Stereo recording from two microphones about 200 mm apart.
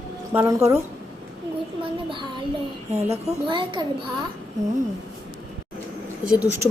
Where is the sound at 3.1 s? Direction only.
25° right (ahead or behind).